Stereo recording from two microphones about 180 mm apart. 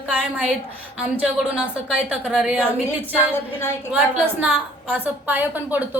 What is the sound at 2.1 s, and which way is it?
Speech, 5° right (ahead or behind).